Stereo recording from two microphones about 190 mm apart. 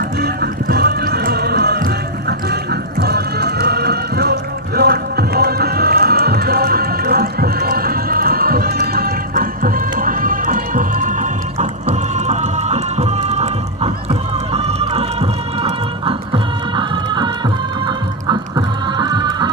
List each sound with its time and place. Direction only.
0.7 s music: 55° right (ahead or behind); by 19.5 s 20° right (ahead or behind)